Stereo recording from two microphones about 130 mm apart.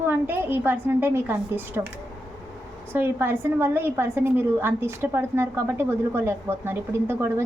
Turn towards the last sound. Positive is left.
turn(degrees=-20)  # may be behind; listen again after turning